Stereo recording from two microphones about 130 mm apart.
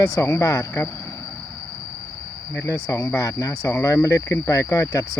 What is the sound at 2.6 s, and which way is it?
Speech, 25° left (ahead or behind).